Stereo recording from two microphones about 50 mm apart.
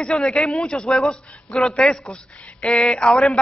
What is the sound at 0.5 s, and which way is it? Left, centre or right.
Speech, centre.